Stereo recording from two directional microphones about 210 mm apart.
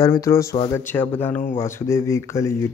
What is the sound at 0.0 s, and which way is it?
Speech, 15° left (ahead or behind).